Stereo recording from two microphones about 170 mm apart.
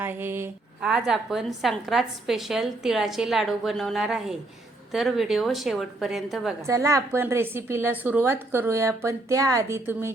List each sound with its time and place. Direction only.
0.0 s a woman's voice: 10° right (ahead or behind)
6.6 s a woman's voice: 15° right (ahead or behind)